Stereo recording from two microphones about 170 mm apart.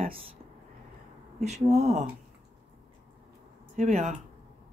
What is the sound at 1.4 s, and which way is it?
Speech, 40° right (ahead or behind).